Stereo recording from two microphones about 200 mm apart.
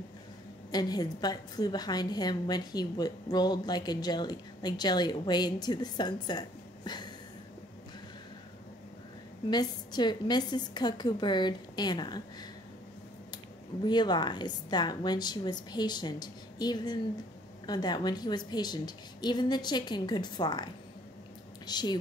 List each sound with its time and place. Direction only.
0.7 s a woman's voice: 20° left (ahead or behind)
9.5 s a woman's voice: 20° left (ahead or behind)
13.8 s a woman's voice: 20° left (ahead or behind)